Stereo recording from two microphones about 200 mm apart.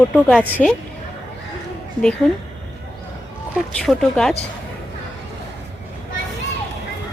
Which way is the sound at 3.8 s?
Centre (ahead or behind).